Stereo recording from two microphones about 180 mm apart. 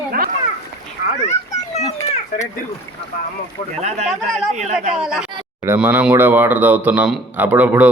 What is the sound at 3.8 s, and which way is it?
Speech, 40° right (ahead or behind).